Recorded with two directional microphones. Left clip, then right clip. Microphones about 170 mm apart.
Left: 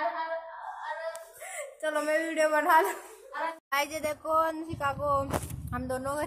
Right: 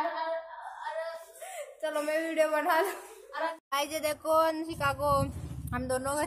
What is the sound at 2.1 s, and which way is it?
Speech, centre (ahead or behind).